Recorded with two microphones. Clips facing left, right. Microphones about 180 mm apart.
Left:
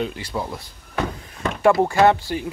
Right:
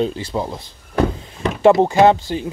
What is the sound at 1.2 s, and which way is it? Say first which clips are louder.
Door: right 3 dB; 25° right (ahead or behind).